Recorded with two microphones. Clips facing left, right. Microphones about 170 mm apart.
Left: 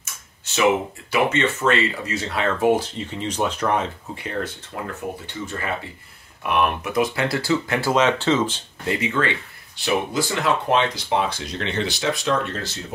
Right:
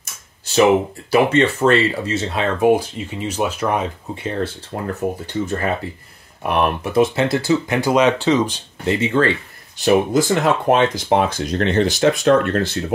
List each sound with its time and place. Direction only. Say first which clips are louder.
1.1 s speech: right 6 dB; 35° right (ahead or behind); by 4.2 s 10° right (ahead or behind)
4.2 s speech: right 5 dB; 30° right (ahead or behind); by 8.9 s 15° right (ahead or behind)
8.9 s speech: right 6 dB; 30° right (ahead or behind); by 12.8 s 60° right (ahead or behind)